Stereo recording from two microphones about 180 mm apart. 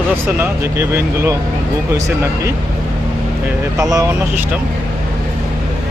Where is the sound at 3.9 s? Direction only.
20° right (ahead or behind).